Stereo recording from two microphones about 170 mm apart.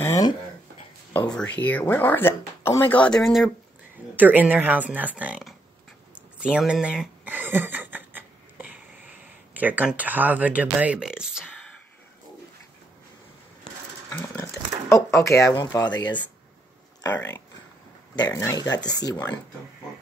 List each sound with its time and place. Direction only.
0.0 s a sound: 20° left (ahead or behind)
1.1 s speech: 5° left (ahead or behind)
6.1 s a sound: 5° right (ahead or behind)
9.5 s speech: 10° right (ahead or behind)
14.1 s speech: 10° left (ahead or behind)
18.1 s speech: 20° left (ahead or behind)